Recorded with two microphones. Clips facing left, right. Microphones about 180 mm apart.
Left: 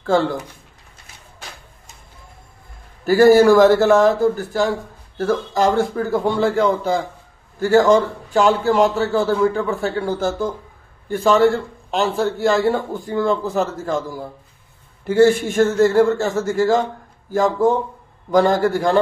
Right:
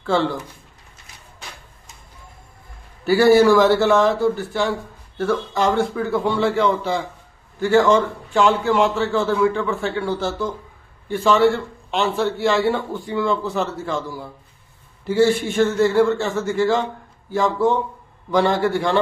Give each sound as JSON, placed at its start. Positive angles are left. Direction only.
{"t": 0.0, "sound": "a man's voice", "side_deg": 45}
{"t": 3.1, "sound": "a man's voice", "side_deg": 45}